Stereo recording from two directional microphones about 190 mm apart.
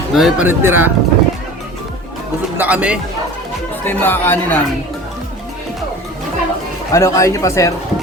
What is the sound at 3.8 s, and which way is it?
Speech, 10° left (ahead or behind).